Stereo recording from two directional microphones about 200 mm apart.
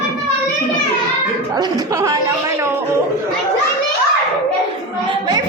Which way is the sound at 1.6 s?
20° right (ahead or behind).